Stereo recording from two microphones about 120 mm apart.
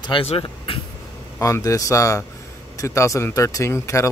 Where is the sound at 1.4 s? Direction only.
25° left (ahead or behind).